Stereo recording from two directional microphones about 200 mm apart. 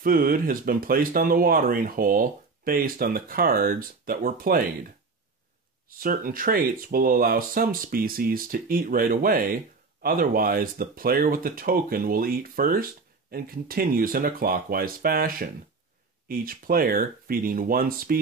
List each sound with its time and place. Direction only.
0.0 s speech: 45° right (ahead or behind)
5.9 s speech: 45° right (ahead or behind)